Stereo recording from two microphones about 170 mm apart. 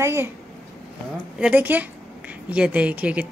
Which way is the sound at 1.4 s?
10° right (ahead or behind).